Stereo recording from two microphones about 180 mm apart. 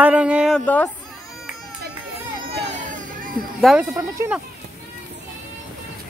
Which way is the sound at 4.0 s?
10° right (ahead or behind).